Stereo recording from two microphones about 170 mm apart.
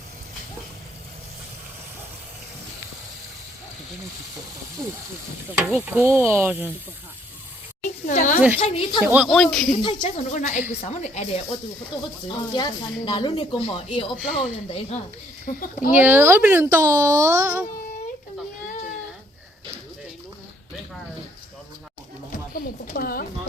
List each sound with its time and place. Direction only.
4.8 s speech: 20° right (ahead or behind)
8.0 s speech: 45° left (ahead or behind)
8.5 s speech: 30° left (ahead or behind)
9.0 s speech: 5° right (ahead or behind)
9.8 s speech: 30° left (ahead or behind)
10.3 s a woman's voice: 45° left (ahead or behind)
12.5 s speech: 25° left (ahead or behind)
14.2 s speech: 5° right (ahead or behind)
14.7 s speech: 35° left (ahead or behind)
15.5 s a woman's voice: 50° left (ahead or behind)
15.9 s speech: 10° right (ahead or behind)
22.3 s speech: 60° left (ahead or behind)